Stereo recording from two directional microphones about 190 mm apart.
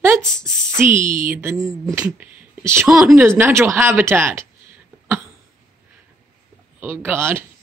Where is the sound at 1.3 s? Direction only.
15° right (ahead or behind).